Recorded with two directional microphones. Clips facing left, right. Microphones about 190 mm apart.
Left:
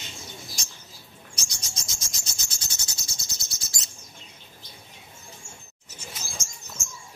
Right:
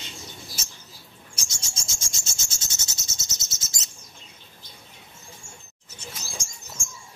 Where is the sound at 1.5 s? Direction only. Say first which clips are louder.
Even; 25° right (ahead or behind).